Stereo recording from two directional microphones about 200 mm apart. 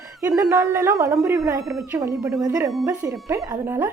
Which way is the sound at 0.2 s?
15° right (ahead or behind).